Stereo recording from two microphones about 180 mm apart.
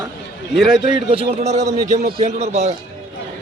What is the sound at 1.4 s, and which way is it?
Speech, 40° right (ahead or behind).